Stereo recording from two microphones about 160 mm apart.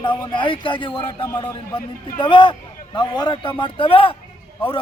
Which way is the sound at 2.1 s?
30° left (ahead or behind).